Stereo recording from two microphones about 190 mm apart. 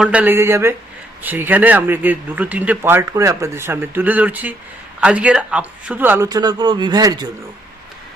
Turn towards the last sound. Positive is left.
turn(degrees=-20)  # may be behind; listen again after turning